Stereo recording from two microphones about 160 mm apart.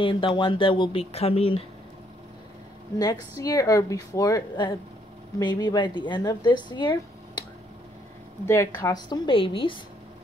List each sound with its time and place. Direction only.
0.0 s speech: 30° left (ahead or behind)
3.0 s a woman's voice: 20° left (ahead or behind)
8.5 s a woman's voice: 20° left (ahead or behind)